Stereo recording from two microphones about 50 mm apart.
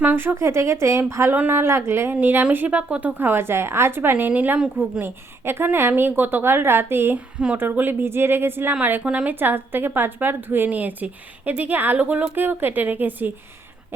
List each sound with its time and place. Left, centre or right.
0.0 s speech: right
0.3 s a woman's voice: right
1.3 s speech: right
1.6 s speech: right
2.2 s speech: right
3.2 s a woman's voice: right
4.3 s speech: right
4.8 s a woman's voice: right
7.3 s a woman's voice: right
7.6 s a woman's voice: right
10.7 s speech: right
12.3 s speech: right